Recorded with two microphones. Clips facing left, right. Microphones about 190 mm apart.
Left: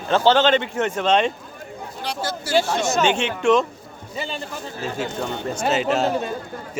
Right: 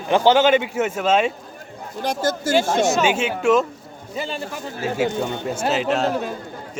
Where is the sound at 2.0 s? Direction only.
45° right (ahead or behind).